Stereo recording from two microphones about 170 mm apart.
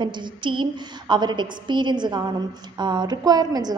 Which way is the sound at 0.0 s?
25° right (ahead or behind).